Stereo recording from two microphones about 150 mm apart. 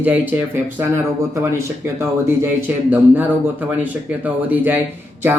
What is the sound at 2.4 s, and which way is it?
Speech, 10° right (ahead or behind).